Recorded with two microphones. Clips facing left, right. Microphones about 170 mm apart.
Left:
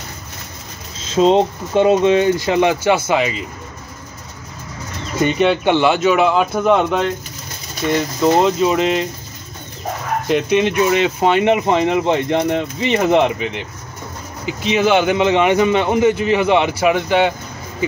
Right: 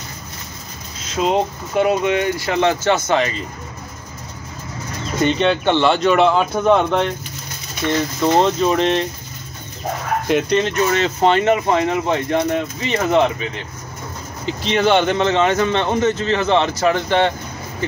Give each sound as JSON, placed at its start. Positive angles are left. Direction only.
{"t": 1.0, "sound": "speech", "side_deg": 25}
{"t": 5.2, "sound": "speech", "side_deg": 10}
{"t": 8.2, "sound": "speech", "side_deg": 5}
{"t": 10.2, "sound": "speech", "side_deg": 0}
{"t": 10.6, "sound": "speech", "side_deg": 10}
{"t": 14.4, "sound": "speech", "side_deg": 5}